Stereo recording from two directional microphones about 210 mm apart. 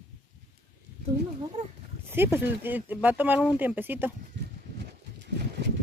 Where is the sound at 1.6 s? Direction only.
40° right (ahead or behind).